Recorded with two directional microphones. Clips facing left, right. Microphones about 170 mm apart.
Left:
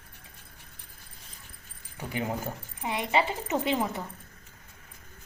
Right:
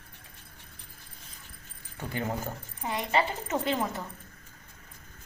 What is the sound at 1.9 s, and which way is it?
A woman's voice, 15° left (ahead or behind).